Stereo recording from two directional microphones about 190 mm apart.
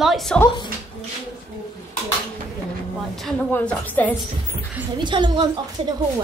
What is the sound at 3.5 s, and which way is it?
Speech, 10° left (ahead or behind).